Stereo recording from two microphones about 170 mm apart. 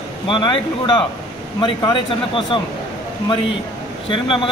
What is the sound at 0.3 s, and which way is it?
Speech, 30° left (ahead or behind).